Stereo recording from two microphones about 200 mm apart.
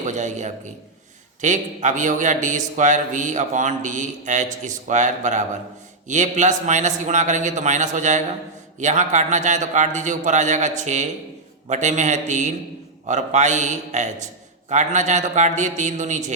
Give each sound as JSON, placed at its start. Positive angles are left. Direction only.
{"t": 0.0, "sound": "a man's voice", "side_deg": -35}